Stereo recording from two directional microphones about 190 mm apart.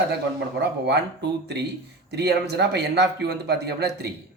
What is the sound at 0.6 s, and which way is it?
A man's voice, 65° right (ahead or behind).